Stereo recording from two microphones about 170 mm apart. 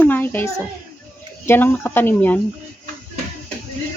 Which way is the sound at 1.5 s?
10° left (ahead or behind).